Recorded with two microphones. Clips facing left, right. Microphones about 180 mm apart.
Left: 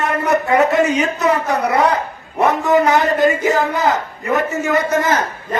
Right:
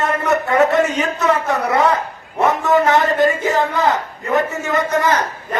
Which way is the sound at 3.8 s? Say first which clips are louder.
Even; 20° left (ahead or behind).